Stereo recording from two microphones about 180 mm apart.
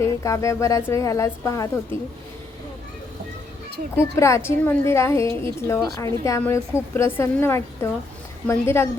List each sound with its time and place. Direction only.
0.0 s speech: 15° left (ahead or behind)
4.1 s speech: 15° left (ahead or behind)